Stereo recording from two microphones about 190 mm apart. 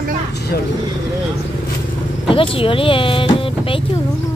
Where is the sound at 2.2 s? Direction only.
30° left (ahead or behind).